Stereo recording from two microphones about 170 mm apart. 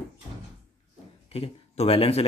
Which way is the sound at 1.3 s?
35° left (ahead or behind).